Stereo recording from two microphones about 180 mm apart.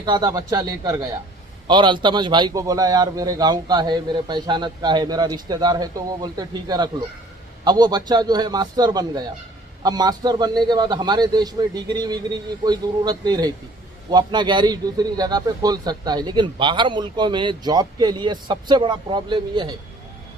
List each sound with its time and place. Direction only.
0.0 s a man's voice: 20° right (ahead or behind)